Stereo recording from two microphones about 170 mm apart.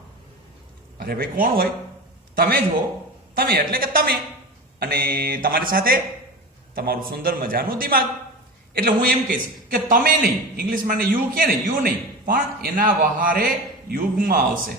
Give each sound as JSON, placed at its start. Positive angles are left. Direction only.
{"t": 0.9, "sound": "a man's voice", "side_deg": -60}